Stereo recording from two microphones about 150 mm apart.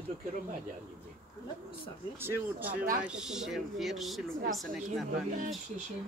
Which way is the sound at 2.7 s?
70° right (ahead or behind).